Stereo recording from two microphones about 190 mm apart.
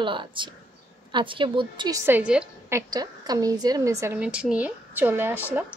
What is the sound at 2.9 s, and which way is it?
A woman's voice, 20° right (ahead or behind).